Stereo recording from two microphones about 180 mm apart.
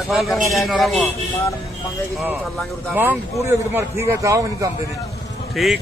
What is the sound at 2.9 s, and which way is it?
A man's voice, 10° right (ahead or behind).